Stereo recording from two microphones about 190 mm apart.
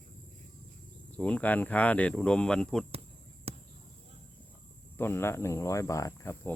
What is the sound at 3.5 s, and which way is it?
Basketball bounce, 35° right (ahead or behind).